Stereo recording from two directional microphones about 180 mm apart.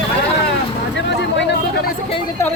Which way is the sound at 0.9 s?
80° left.